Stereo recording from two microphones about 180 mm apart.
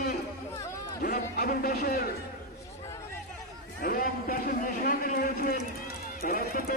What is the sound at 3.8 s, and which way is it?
A man's voice, 55° left (ahead or behind).